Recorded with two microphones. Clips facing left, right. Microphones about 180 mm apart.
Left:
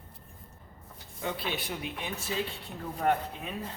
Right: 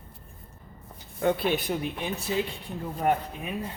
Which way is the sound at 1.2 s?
55° right (ahead or behind).